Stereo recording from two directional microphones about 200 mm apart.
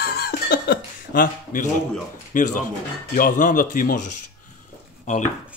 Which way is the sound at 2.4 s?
40° left (ahead or behind).